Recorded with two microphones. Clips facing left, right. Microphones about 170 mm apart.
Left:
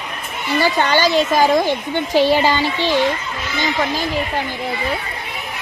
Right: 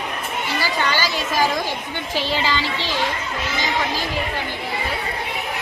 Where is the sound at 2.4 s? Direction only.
50° left (ahead or behind).